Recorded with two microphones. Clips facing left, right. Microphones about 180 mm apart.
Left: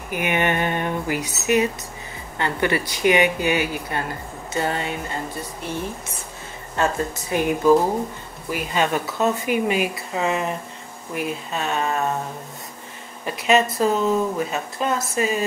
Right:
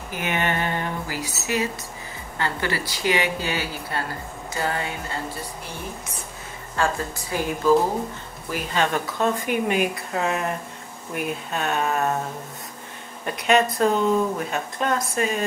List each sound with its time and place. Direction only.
0.1 s speech: 15° left (ahead or behind)
6.8 s speech: 20° left (ahead or behind); by 12.2 s centre (ahead or behind)
13.2 s speech: 5° left (ahead or behind)